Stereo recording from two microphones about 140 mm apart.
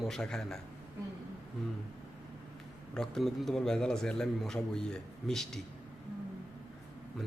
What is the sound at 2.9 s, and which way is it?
A man's voice, 5° left (ahead or behind).